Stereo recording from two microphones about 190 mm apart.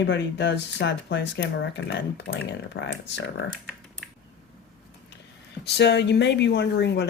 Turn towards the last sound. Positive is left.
turn(degrees=65)  # may be behind; listen again after turning